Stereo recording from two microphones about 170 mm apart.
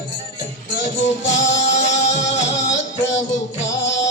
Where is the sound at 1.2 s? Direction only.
90° left.